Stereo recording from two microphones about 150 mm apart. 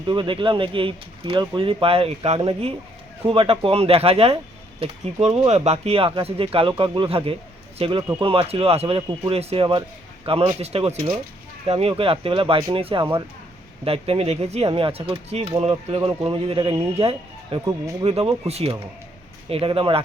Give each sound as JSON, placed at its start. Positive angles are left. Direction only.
{"t": 0.1, "sound": "speech", "side_deg": -30}